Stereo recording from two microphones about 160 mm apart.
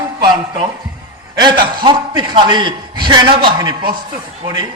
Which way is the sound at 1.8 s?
30° right (ahead or behind).